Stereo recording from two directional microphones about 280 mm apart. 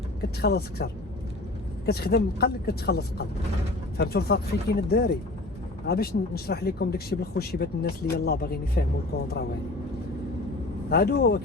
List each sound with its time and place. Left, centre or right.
0.2 s speech: left
1.9 s speech: left
10.8 s speech: left